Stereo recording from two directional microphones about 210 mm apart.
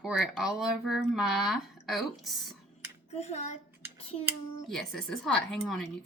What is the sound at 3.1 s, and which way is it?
Speech, 30° left (ahead or behind).